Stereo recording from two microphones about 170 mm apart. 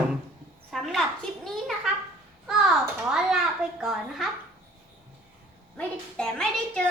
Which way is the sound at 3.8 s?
Centre (ahead or behind).